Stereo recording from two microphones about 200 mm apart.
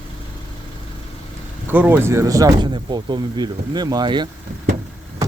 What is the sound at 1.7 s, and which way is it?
Speech, 10° right (ahead or behind).